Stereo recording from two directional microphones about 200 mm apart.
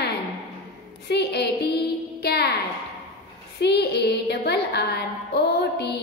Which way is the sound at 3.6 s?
55° left (ahead or behind).